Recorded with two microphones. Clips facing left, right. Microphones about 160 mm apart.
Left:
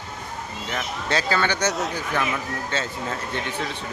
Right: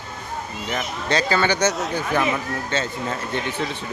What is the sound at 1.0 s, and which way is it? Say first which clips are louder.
Speech: right 3 dB; 5° left (ahead or behind).